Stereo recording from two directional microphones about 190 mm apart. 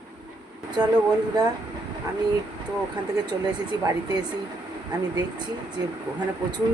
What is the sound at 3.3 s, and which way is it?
Speech, 20° right (ahead or behind).